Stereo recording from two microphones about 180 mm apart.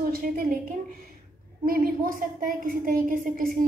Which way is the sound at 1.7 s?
50° right (ahead or behind).